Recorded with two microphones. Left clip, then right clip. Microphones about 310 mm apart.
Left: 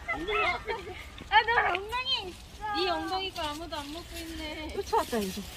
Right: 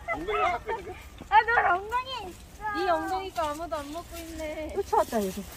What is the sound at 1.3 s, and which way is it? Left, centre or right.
Cat, centre.